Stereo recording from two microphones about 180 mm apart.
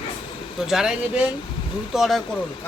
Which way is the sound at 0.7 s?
5° right (ahead or behind).